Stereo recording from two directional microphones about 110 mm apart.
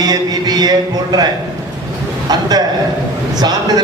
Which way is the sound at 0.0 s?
35° right (ahead or behind).